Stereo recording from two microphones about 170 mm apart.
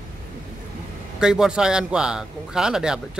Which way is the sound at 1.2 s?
5° right (ahead or behind).